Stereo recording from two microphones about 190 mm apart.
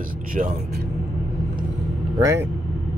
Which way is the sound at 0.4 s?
40° right (ahead or behind).